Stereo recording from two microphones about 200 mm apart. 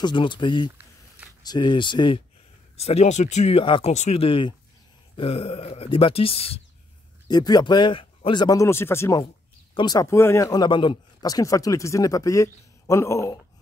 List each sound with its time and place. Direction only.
0.0 s speech: 25° left (ahead or behind)
7.2 s a man's voice: 20° left (ahead or behind)